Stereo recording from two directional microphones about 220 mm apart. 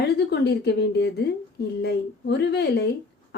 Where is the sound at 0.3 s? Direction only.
50° left (ahead or behind).